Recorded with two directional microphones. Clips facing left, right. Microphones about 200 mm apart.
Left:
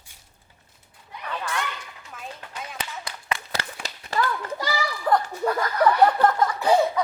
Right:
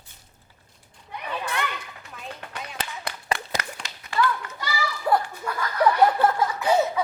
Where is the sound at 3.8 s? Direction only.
35° left (ahead or behind).